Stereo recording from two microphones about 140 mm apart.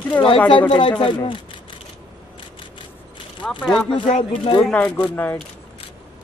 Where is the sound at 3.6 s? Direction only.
5° left (ahead or behind).